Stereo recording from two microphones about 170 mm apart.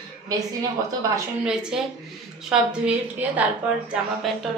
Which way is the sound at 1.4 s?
5° right (ahead or behind).